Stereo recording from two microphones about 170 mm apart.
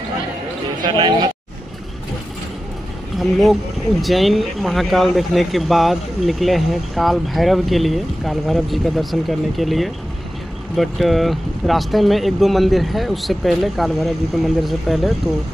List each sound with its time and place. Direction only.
0.8 s speech: 30° right (ahead or behind)
3.2 s speech: centre (ahead or behind)